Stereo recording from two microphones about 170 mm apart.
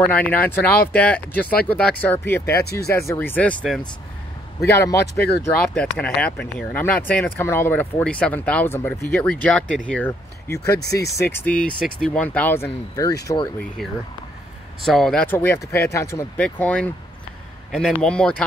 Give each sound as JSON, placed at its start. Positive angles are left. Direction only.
{"t": 0.0, "sound": "speech", "side_deg": 10}
{"t": 2.6, "sound": "speech", "side_deg": 70}
{"t": 2.9, "sound": "speech", "side_deg": 15}
{"t": 5.4, "sound": "speech", "side_deg": 5}
{"t": 10.8, "sound": "speech", "side_deg": 75}
{"t": 11.1, "sound": "speech", "side_deg": 15}
{"t": 14.8, "sound": "speech", "side_deg": 0}